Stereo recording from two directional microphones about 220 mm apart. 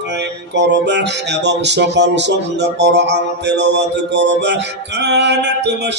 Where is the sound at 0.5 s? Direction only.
50° right (ahead or behind).